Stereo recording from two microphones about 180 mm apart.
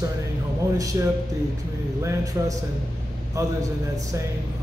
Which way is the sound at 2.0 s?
20° right (ahead or behind).